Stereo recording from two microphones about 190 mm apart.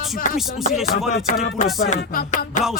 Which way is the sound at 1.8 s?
45° left (ahead or behind).